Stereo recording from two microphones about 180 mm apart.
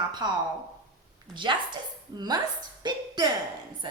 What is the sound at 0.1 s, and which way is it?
Speech, 25° right (ahead or behind).